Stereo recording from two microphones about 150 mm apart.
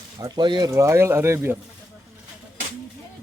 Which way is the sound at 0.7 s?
20° right (ahead or behind).